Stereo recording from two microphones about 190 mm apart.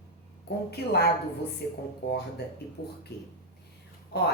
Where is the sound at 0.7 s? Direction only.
60° left (ahead or behind).